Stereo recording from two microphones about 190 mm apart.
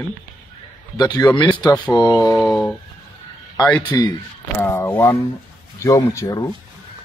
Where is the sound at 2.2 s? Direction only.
Centre (ahead or behind).